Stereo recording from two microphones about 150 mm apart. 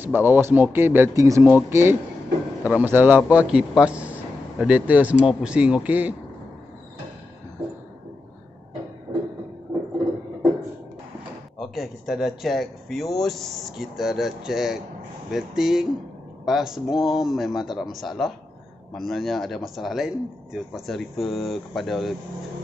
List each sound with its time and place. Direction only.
0.0 s a man's voice: 15° right (ahead or behind)
9.1 s a sound: 40° right (ahead or behind)
11.5 s speech: centre (ahead or behind)